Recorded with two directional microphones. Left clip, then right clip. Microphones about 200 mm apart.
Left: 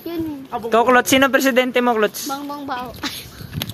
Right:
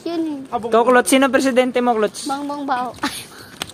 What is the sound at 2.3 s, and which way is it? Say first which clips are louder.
Speech: right 4 dB; 60° right (ahead or behind).